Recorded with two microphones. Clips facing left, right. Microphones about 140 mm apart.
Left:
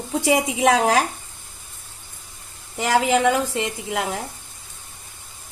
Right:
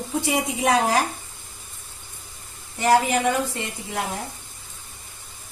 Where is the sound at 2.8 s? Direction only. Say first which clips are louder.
Left 1 dB; 90° left.